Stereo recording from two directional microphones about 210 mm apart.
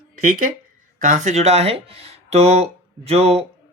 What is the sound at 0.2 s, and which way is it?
Speech, 40° right (ahead or behind).